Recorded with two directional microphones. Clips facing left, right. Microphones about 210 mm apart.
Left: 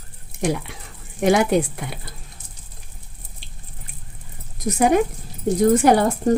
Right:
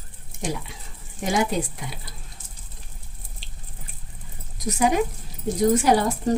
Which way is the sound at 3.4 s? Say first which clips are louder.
Left 2 dB; 55° left (ahead or behind).